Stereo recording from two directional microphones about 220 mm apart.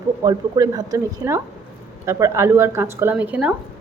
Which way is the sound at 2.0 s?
15° right (ahead or behind).